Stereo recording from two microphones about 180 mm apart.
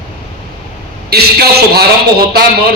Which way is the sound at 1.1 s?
60° right (ahead or behind).